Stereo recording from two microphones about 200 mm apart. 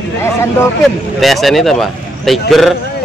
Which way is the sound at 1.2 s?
Centre (ahead or behind).